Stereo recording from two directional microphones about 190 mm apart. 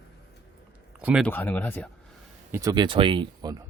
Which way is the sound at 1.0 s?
5° right (ahead or behind).